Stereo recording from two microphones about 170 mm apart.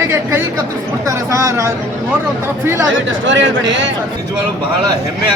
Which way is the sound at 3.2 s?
90° right.